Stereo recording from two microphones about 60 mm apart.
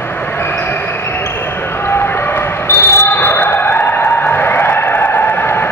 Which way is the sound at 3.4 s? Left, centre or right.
Left.